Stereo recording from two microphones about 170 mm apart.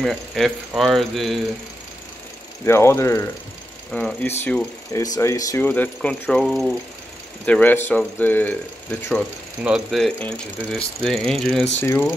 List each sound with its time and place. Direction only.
0.0 s speech: centre (ahead or behind)
2.6 s speech: 15° left (ahead or behind)
5.0 s speech: 20° left (ahead or behind)
9.6 s speech: centre (ahead or behind)
11.8 s speech: 15° left (ahead or behind)